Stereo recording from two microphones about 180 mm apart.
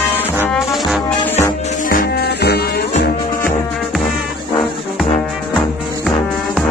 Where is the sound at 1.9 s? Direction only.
55° left (ahead or behind).